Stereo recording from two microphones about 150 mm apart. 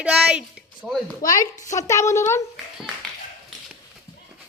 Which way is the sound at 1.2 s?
20° left (ahead or behind).